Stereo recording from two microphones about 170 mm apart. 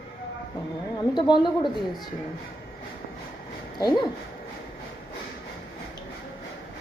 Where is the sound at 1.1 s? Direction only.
25° left (ahead or behind).